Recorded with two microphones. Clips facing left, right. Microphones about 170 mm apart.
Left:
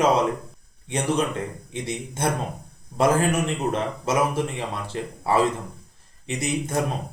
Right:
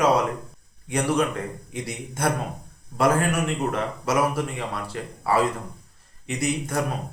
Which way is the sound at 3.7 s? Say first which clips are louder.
Left 1 dB; 25° left (ahead or behind).